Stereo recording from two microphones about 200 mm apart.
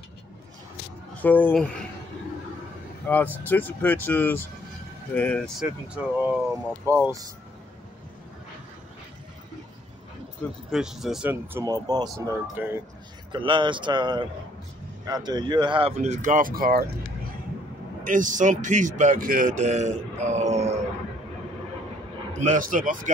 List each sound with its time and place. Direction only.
1.2 s speech: 10° left (ahead or behind)
3.1 s speech: 10° left (ahead or behind)
5.9 s speech: 10° right (ahead or behind)
10.7 s speech: centre (ahead or behind); by 15.9 s 25° right (ahead or behind)
16.0 s speech: 35° right (ahead or behind)
18.0 s a man's voice: 40° right (ahead or behind)
22.3 s a man's voice: 40° right (ahead or behind)